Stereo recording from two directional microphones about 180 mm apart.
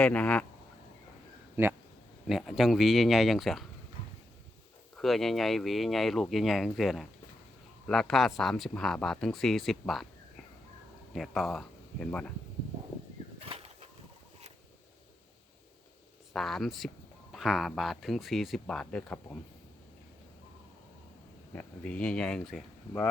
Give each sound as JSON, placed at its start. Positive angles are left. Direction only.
{"t": 0.0, "sound": "speech", "side_deg": 10}
{"t": 2.2, "sound": "speech", "side_deg": 0}
{"t": 4.9, "sound": "speech", "side_deg": 0}
{"t": 11.1, "sound": "speech", "side_deg": 0}
{"t": 13.4, "sound": "a sound", "side_deg": -30}
{"t": 16.3, "sound": "speech", "side_deg": 0}
{"t": 21.5, "sound": "speech", "side_deg": 5}